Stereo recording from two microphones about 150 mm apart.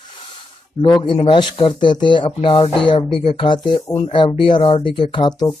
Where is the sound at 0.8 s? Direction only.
35° left (ahead or behind).